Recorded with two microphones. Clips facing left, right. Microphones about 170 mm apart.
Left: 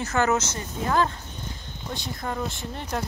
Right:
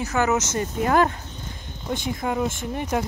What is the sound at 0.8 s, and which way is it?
Speech, 65° right (ahead or behind).